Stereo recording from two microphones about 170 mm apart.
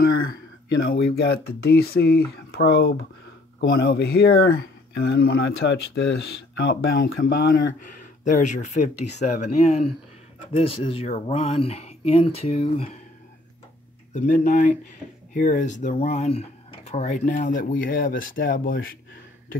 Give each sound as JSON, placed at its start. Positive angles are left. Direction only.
{"t": 0.7, "sound": "speech", "side_deg": 75}
{"t": 6.6, "sound": "speech", "side_deg": 65}
{"t": 14.1, "sound": "speech", "side_deg": 45}